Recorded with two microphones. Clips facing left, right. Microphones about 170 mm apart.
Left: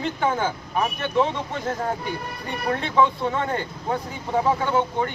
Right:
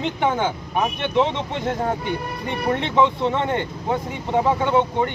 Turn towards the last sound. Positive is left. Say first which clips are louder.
# right 3 dB
turn(degrees=-20)  # may be behind; listen again after turning